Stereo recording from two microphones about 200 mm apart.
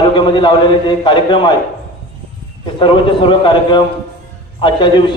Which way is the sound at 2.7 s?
25° left (ahead or behind).